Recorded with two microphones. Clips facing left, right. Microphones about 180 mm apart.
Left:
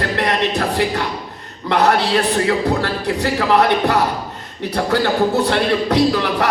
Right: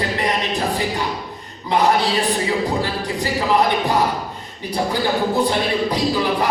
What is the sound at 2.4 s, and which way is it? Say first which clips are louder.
Speech: left 3 dB; 65° left (ahead or behind).